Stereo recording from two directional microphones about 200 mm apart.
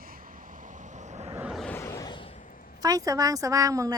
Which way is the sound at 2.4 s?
45° left (ahead or behind).